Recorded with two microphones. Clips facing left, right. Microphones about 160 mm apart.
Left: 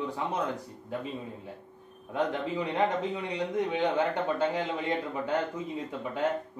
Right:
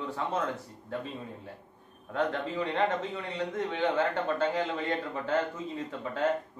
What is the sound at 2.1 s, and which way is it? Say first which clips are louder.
A man's voice: left 1 dB; 15° left (ahead or behind).